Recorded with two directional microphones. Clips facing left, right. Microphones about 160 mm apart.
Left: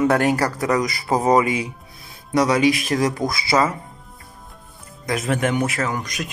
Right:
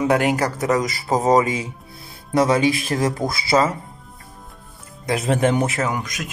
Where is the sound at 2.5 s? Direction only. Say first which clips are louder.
Left 1 dB; 30° right (ahead or behind).